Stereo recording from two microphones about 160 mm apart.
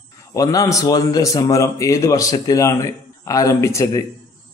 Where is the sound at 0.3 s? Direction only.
20° left (ahead or behind).